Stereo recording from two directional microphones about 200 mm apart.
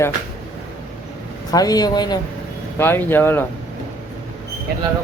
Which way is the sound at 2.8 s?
10° left (ahead or behind).